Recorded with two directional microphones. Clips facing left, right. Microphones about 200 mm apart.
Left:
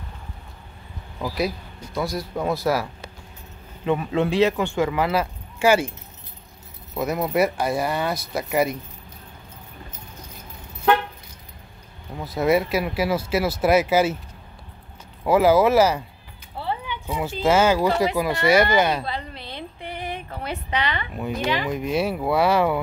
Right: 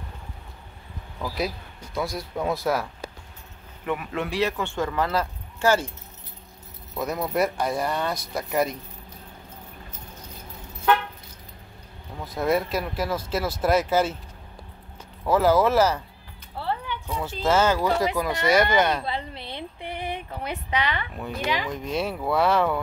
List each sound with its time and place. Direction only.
2.0 s speech: centre (ahead or behind)
3.8 s speech: 25° left (ahead or behind); by 5.9 s 10° left (ahead or behind)
7.0 s speech: 5° left (ahead or behind)
12.2 s speech: 5° left (ahead or behind)
15.2 s speech: 10° left (ahead or behind)
16.5 s a sound: centre (ahead or behind)
17.1 s speech: 10° left (ahead or behind)
19.0 s a sound: 25° right (ahead or behind); by 21.1 s 10° right (ahead or behind)
21.6 s speech: 10° left (ahead or behind)